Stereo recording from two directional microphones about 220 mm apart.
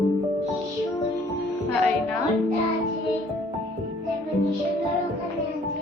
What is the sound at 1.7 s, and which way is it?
Speech, 5° left (ahead or behind).